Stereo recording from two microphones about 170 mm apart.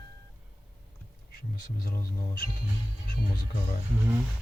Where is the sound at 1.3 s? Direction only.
60° left (ahead or behind).